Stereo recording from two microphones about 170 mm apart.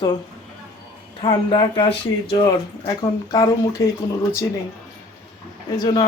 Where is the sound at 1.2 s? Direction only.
30° left (ahead or behind).